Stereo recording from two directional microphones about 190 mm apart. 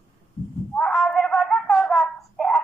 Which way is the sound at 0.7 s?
Centre (ahead or behind).